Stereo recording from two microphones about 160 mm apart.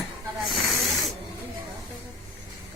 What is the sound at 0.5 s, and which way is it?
Snake, centre (ahead or behind).